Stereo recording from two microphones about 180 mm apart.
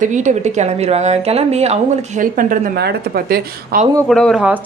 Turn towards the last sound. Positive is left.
turn(degrees=0)  # may be behind; listen again after turning